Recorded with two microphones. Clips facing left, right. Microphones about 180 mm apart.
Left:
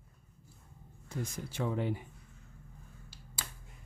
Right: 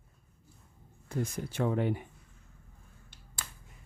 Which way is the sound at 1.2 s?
55° right (ahead or behind).